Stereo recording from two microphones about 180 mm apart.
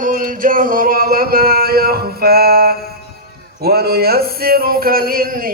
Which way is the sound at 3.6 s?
60° right (ahead or behind).